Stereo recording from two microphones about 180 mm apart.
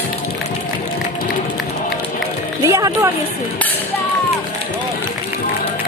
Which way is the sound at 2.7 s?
20° right (ahead or behind).